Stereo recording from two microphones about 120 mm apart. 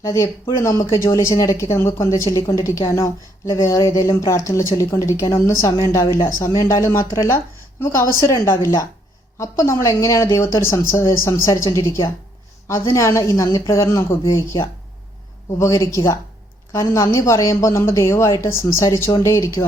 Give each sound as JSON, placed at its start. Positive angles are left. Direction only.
{"t": 0.0, "sound": "a woman's voice", "side_deg": 25}